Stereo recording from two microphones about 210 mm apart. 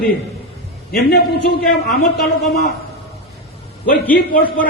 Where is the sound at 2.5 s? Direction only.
45° left (ahead or behind).